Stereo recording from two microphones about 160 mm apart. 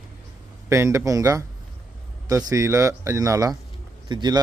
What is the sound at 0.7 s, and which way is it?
Speech, 20° right (ahead or behind).